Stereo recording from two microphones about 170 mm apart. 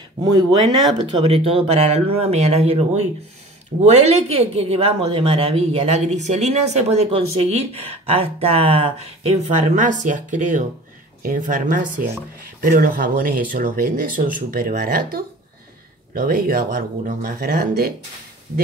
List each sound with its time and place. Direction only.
0.2 s speech: 25° right (ahead or behind); by 17.9 s 60° right (ahead or behind)